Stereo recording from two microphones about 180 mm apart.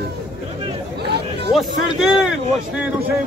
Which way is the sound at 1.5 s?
Centre (ahead or behind).